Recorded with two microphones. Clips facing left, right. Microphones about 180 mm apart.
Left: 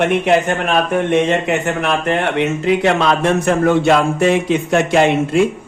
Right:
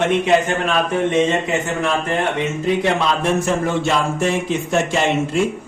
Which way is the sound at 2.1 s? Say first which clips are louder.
Left 4 dB; 70° left (ahead or behind).